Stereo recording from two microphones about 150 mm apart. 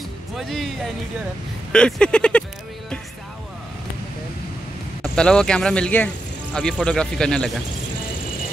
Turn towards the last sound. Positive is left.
turn(degrees=5)  # may be behind; listen again after turning